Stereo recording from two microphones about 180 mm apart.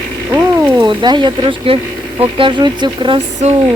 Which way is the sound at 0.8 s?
25° right (ahead or behind).